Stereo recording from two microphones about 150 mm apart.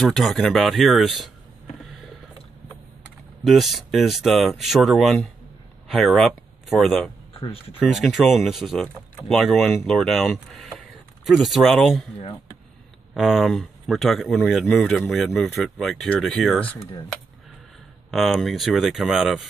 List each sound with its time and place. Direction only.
0.0 s speech: centre (ahead or behind)
3.4 s speech: centre (ahead or behind)
7.3 s speech: 40° left (ahead or behind)
7.9 s speech: centre (ahead or behind)
13.1 s speech: centre (ahead or behind)
18.1 s speech: centre (ahead or behind)